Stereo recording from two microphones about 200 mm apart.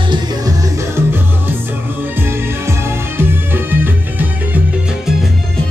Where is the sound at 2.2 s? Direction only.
10° right (ahead or behind).